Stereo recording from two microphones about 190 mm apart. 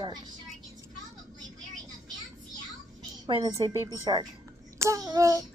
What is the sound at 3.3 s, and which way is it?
A woman's voice, 25° right (ahead or behind).